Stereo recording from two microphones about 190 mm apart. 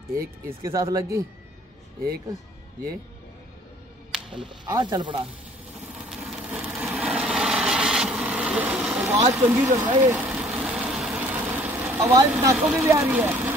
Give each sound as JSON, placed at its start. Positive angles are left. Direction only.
{"t": 0.1, "sound": "speech", "side_deg": -50}
{"t": 0.7, "sound": "speech", "side_deg": -15}
{"t": 4.3, "sound": "speech", "side_deg": -25}
{"t": 5.9, "sound": "wood", "side_deg": -5}
{"t": 9.3, "sound": "speech", "side_deg": -10}
{"t": 10.0, "sound": "vehicle", "side_deg": -10}
{"t": 12.3, "sound": "speech", "side_deg": -15}